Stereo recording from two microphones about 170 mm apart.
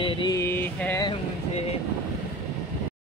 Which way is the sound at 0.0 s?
30° left (ahead or behind).